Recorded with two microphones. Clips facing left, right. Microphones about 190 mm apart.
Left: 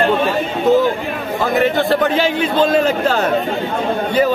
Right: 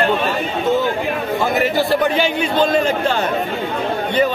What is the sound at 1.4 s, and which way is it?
A man's voice, 5° right (ahead or behind).